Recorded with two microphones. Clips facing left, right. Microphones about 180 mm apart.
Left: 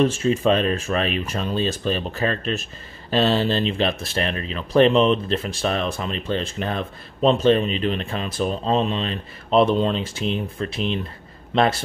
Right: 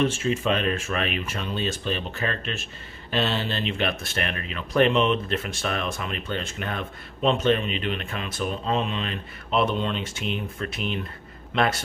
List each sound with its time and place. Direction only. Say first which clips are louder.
0.0 s a man's voice: left 5 dB; 35° left (ahead or behind)